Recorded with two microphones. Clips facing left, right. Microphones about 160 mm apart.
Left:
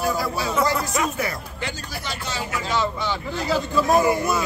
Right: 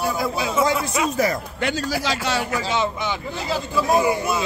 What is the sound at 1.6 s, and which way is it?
Speech, 80° right.